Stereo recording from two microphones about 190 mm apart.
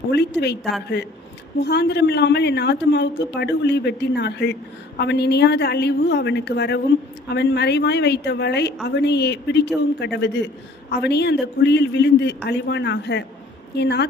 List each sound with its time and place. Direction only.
0.1 s a woman's voice: 60° left (ahead or behind)